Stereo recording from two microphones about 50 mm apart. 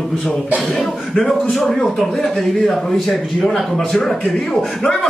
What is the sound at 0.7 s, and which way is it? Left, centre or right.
A man's voice, centre.